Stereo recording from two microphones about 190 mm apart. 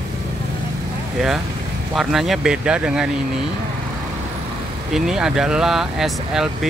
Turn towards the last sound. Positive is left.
turn(degrees=0)  # may be behind; listen again after turning